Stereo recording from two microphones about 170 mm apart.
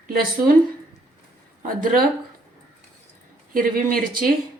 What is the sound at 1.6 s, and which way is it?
Speech, 55° right (ahead or behind).